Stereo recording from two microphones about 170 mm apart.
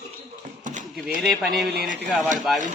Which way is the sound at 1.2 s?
Centre (ahead or behind).